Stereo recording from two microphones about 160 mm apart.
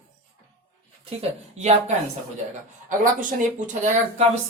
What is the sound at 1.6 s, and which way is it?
Speech, 45° right (ahead or behind).